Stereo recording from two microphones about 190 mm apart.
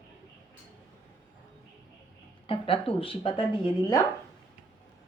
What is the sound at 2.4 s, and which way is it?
Speech, 30° left (ahead or behind).